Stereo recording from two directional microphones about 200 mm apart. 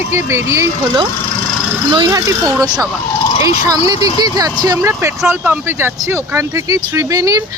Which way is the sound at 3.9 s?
20° right (ahead or behind).